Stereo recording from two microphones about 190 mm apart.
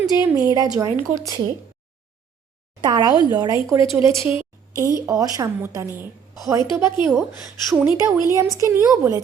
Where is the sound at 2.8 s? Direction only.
20° right (ahead or behind).